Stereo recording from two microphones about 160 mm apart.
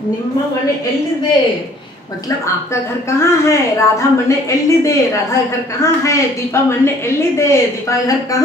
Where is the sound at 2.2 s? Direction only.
20° left (ahead or behind).